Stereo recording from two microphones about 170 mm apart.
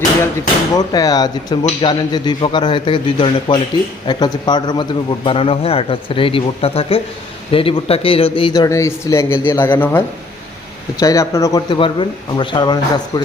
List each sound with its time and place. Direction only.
0.8 s a man's voice: 20° left (ahead or behind)
11.0 s speech: 20° left (ahead or behind)
11.7 s speech: 30° left (ahead or behind)